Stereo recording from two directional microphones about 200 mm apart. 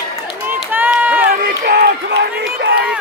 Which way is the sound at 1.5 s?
50° right (ahead or behind).